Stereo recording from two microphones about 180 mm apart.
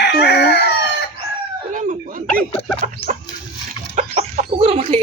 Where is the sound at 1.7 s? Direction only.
45° right (ahead or behind).